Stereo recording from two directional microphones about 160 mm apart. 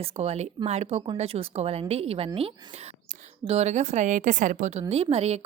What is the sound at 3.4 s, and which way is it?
A woman's voice, 40° right (ahead or behind).